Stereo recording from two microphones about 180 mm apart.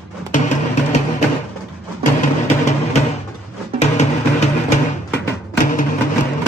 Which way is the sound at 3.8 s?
40° left (ahead or behind).